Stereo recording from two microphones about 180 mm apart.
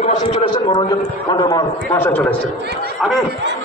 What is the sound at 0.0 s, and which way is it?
A man's voice, 35° left (ahead or behind).